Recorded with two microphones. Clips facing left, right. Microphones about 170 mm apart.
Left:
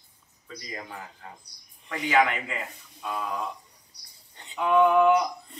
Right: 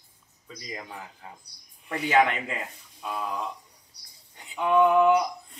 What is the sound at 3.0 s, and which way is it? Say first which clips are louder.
A man's voice: even; 10° right (ahead or behind).